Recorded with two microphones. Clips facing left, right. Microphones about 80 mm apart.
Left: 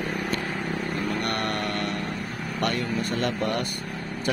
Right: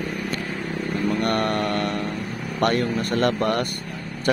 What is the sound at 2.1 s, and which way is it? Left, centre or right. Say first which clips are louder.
Vehicle: right 2 dB; centre.